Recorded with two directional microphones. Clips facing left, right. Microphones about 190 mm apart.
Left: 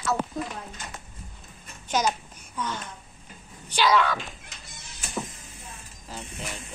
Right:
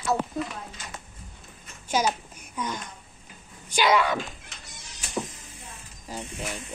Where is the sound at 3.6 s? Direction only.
15° right (ahead or behind).